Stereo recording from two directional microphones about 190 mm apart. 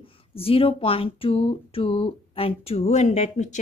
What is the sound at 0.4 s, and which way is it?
A woman's voice, 30° left (ahead or behind).